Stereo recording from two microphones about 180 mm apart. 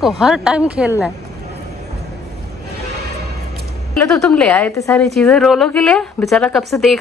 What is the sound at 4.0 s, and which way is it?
A woman's voice, 5° left (ahead or behind).